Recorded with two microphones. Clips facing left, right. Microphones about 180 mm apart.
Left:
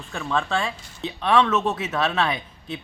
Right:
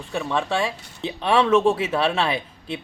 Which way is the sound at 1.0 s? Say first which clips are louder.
Even; 30° right (ahead or behind).